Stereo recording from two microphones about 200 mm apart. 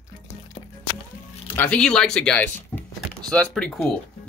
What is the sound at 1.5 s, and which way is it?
Speech, 10° left (ahead or behind).